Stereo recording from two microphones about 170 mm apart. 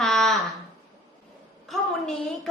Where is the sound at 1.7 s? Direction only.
Centre (ahead or behind).